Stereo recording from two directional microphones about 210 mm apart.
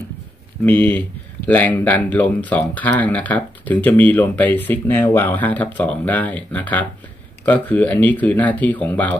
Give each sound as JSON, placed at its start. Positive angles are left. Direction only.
{"t": 0.7, "sound": "speech", "side_deg": 5}